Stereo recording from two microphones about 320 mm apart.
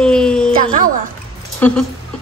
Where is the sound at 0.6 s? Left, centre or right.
Right.